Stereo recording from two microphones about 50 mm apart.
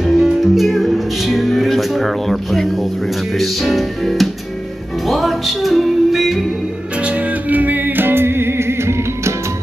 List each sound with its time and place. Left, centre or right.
0.0 s music: centre
7.0 s music: right